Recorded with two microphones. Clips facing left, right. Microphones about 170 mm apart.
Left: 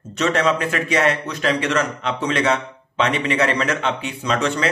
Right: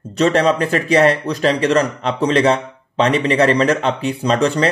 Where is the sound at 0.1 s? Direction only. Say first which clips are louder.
Right 5 dB; 35° right (ahead or behind).